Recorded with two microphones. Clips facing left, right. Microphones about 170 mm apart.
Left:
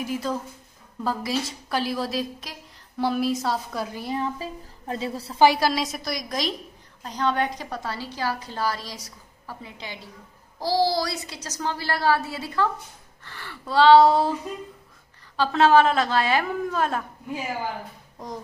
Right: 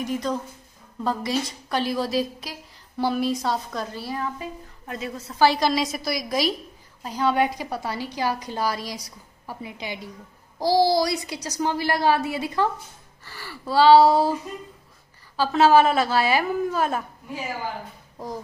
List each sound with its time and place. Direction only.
0.0 s a woman's voice: 5° left (ahead or behind); by 5.4 s 30° left (ahead or behind)
5.4 s a woman's voice: 10° left (ahead or behind); by 12.6 s 15° right (ahead or behind)
13.2 s a woman's voice: 5° right (ahead or behind)
15.3 s a woman's voice: 5° right (ahead or behind)